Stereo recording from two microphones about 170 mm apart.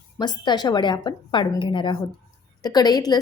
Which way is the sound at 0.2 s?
25° left (ahead or behind).